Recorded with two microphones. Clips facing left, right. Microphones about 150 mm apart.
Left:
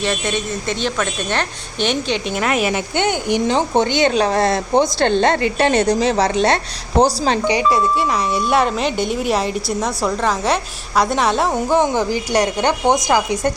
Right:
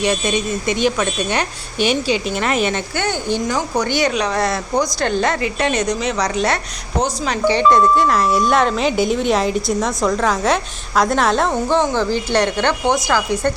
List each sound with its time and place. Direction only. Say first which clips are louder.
0.0 s a woman's voice: right 2 dB; 15° right (ahead or behind); by 2.8 s 5° left (ahead or behind)
2.9 s speech: left 2 dB; 20° left (ahead or behind)
7.4 s speech: right 7 dB; 10° left (ahead or behind)
11.5 s speech: left 1 dB; 15° left (ahead or behind)